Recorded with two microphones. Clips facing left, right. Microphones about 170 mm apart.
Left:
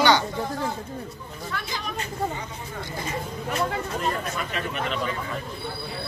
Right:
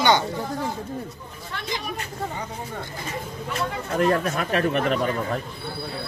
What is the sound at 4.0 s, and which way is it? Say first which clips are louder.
Speech: right 12 dB; 70° right (ahead or behind).